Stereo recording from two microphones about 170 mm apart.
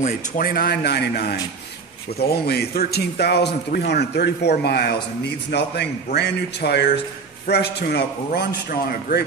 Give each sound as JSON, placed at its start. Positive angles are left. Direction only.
{"t": 0.0, "sound": "speech", "side_deg": 55}